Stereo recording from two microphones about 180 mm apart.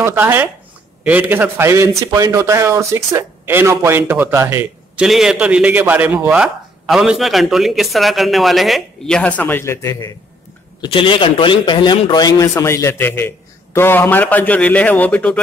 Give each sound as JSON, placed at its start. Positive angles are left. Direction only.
{"t": 0.0, "sound": "a man's voice", "side_deg": -10}